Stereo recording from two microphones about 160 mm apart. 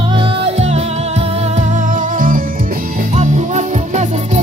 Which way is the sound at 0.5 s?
40° right (ahead or behind).